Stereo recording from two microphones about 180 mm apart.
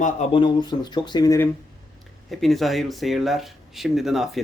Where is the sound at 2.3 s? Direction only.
Centre (ahead or behind).